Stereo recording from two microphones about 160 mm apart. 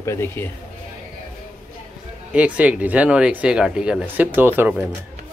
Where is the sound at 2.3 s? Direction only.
10° right (ahead or behind).